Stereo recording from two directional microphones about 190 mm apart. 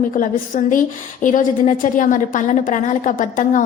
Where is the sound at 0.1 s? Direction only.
45° left (ahead or behind).